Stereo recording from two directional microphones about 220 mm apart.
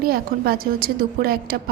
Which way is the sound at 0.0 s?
40° right (ahead or behind).